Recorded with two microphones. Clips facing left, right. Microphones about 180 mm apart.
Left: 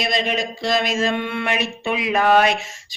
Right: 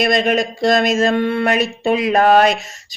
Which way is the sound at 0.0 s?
50° right (ahead or behind).